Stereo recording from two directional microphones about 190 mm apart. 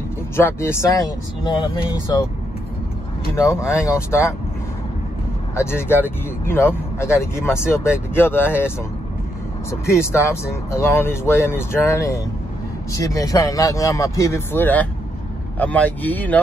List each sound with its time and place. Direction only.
0.4 s speech: 15° left (ahead or behind)
3.5 s speech: 15° left (ahead or behind)
5.6 s speech: 10° left (ahead or behind)